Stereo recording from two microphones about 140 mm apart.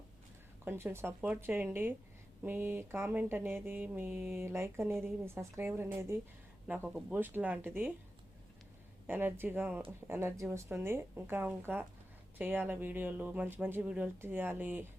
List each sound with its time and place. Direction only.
0.6 s speech: 15° right (ahead or behind)
9.0 s speech: 15° right (ahead or behind)